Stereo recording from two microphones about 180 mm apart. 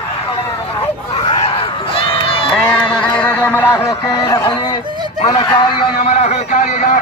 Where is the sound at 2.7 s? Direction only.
5° left (ahead or behind); by 4.8 s 25° left (ahead or behind).